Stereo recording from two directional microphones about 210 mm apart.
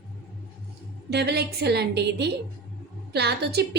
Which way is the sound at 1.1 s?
50° right (ahead or behind).